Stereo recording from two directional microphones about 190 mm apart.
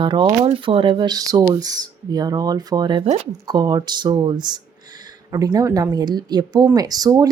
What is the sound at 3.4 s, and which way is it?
A woman's voice, 20° right (ahead or behind).